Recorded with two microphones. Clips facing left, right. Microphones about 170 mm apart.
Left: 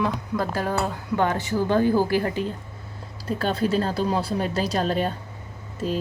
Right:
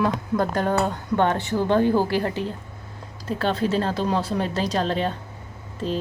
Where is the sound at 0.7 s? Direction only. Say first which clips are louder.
Right 3 dB; 25° right (ahead or behind).